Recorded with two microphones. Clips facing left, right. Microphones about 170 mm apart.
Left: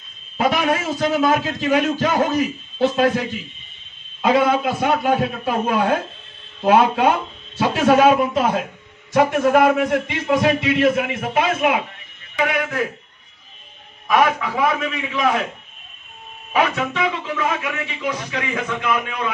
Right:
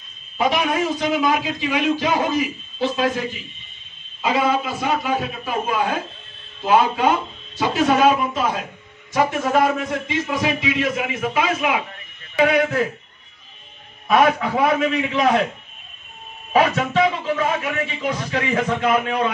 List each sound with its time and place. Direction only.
0.9 s a man's voice: 45° left (ahead or behind)
12.4 s speech: 40° right (ahead or behind)
14.1 s speech: 40° right (ahead or behind)
16.5 s speech: 40° right (ahead or behind)